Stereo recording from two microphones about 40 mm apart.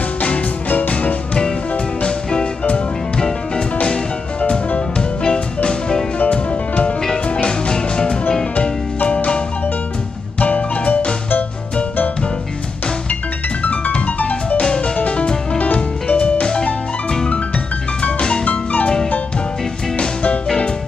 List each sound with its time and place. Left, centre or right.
0.2 s music: left
2.0 s music: left
6.1 s music: left
7.4 s music: centre
9.0 s music: left
10.4 s music: left
13.6 s music: left
14.6 s music: left
18.4 s music: left